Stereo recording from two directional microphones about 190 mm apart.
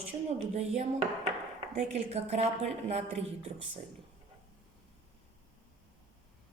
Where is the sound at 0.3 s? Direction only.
35° right (ahead or behind).